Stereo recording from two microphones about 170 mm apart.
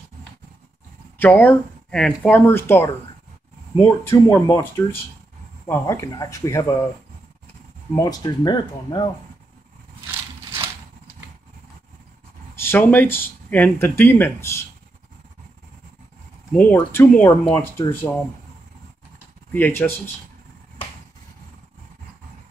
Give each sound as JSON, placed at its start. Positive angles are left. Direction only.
{"t": 1.2, "sound": "speech", "side_deg": 10}
{"t": 7.9, "sound": "speech", "side_deg": 25}
{"t": 12.5, "sound": "speech", "side_deg": 15}
{"t": 16.7, "sound": "speech", "side_deg": 15}
{"t": 19.5, "sound": "speech", "side_deg": 10}